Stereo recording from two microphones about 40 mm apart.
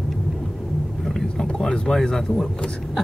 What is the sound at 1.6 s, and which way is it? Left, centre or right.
Speech, centre.